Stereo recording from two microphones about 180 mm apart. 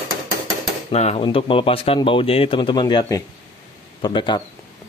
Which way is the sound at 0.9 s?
40° left (ahead or behind).